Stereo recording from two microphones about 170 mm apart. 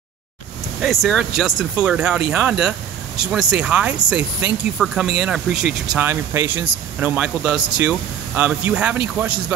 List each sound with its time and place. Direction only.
0.7 s speech: centre (ahead or behind)